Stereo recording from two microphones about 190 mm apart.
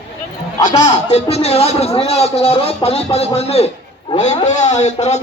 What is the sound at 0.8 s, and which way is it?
A man's voice, 35° left (ahead or behind).